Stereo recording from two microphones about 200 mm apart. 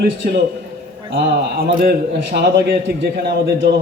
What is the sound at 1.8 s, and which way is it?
A man's voice, 50° right (ahead or behind).